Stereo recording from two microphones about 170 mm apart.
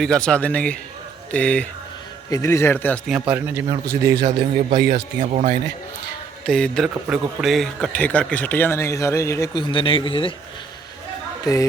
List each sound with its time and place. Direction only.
0.0 s a man's voice: 5° left (ahead or behind)
3.1 s a man's voice: 10° right (ahead or behind)
4.3 s a man's voice: 45° right (ahead or behind)
6.4 s a sound: 5° left (ahead or behind)
7.1 s a man's voice: centre (ahead or behind); by 10.3 s 30° left (ahead or behind)
11.5 s speech: 20° left (ahead or behind)